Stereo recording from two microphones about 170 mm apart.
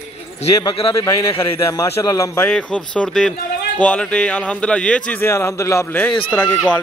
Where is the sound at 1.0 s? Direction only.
20° left (ahead or behind).